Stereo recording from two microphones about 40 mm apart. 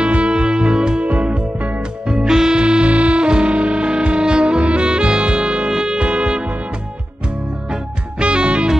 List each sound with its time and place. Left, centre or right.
0.0 s music: right
7.7 s music: right